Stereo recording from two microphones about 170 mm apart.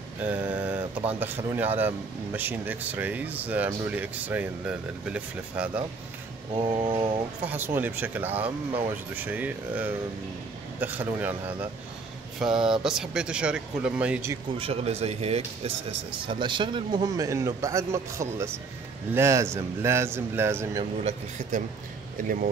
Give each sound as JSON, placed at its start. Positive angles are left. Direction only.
{"t": 0.2, "sound": "speech", "side_deg": -10}
{"t": 6.5, "sound": "speech", "side_deg": -30}
{"t": 7.4, "sound": "speech", "side_deg": -10}
{"t": 14.6, "sound": "speech", "side_deg": -35}
{"t": 21.0, "sound": "speech", "side_deg": -45}